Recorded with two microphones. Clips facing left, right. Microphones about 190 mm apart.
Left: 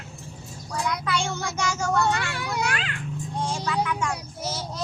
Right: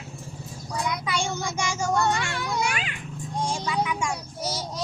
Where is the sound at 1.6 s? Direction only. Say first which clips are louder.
Left 1 dB; 10° right (ahead or behind).